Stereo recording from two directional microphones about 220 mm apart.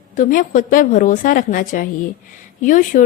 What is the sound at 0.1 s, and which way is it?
A woman's voice, 40° left (ahead or behind).